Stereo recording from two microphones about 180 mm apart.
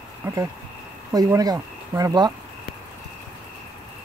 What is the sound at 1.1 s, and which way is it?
Speech, 20° right (ahead or behind).